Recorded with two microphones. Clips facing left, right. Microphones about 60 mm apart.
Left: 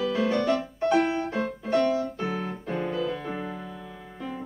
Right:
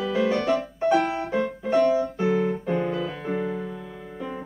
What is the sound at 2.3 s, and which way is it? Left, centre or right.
Keyboard, right.